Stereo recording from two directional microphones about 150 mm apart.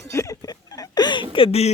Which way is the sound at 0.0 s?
20° left (ahead or behind).